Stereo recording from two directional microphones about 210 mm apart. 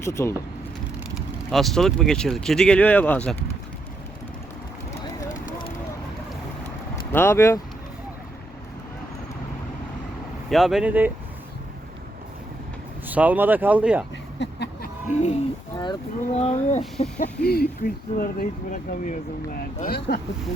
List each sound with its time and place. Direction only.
0.0 s speech: 15° left (ahead or behind)
1.1 s speech: centre (ahead or behind)
7.1 s speech: 10° left (ahead or behind)
10.5 s speech: centre (ahead or behind)
13.1 s speech: 10° right (ahead or behind)
14.3 s a sound: 55° left (ahead or behind)
15.1 s a sound: 30° left (ahead or behind)
15.7 s speech: 20° left (ahead or behind)
17.4 s speech: 50° left (ahead or behind)